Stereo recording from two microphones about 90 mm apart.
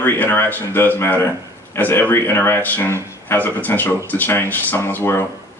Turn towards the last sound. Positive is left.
turn(degrees=25)  # may be behind; listen again after turning